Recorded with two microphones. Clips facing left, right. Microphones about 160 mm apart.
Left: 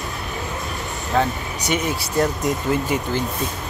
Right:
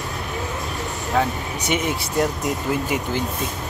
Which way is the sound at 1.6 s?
20° right (ahead or behind).